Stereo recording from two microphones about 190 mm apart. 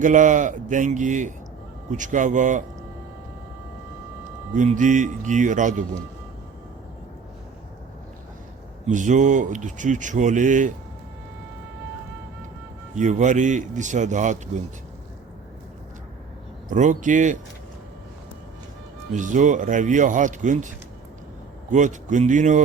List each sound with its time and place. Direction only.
0.0 s speech: 40° right (ahead or behind)
4.5 s speech: 40° right (ahead or behind)
8.9 s speech: 40° right (ahead or behind)
13.0 s speech: 40° right (ahead or behind)
16.6 s speech: 40° right (ahead or behind)
19.1 s speech: 40° right (ahead or behind)